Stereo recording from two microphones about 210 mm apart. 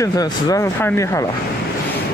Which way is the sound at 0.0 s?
15° left (ahead or behind).